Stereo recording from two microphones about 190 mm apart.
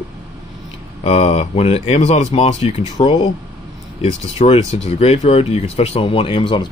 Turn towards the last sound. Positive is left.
turn(degrees=25)  # may be behind; listen again after turning